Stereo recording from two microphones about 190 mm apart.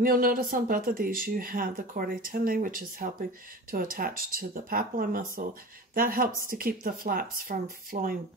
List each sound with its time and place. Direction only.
0.0 s speech: 50° right (ahead or behind)